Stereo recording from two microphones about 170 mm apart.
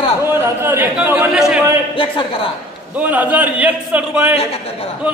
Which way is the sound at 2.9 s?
10° right (ahead or behind).